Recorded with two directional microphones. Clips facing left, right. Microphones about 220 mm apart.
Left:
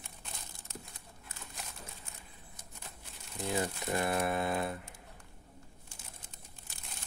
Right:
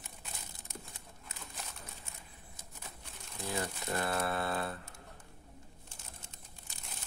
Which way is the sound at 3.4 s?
20° left (ahead or behind).